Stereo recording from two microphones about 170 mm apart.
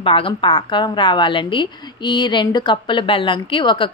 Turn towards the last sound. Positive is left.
turn(degrees=30)  # may be behind; listen again after turning